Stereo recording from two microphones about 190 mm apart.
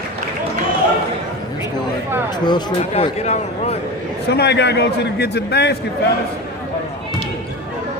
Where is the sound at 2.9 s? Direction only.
35° left (ahead or behind).